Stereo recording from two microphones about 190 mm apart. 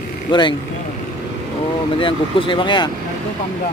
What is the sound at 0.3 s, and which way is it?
Speech, 25° left (ahead or behind).